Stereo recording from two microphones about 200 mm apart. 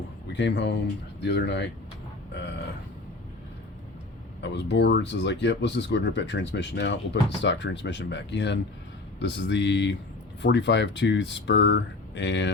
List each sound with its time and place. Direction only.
0.3 s speech: 60° left (ahead or behind)
4.4 s speech: 60° left (ahead or behind)